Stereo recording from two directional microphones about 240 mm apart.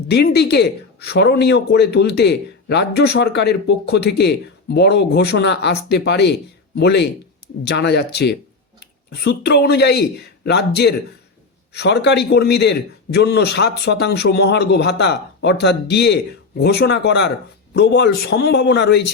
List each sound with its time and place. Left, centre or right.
0.1 s speech: left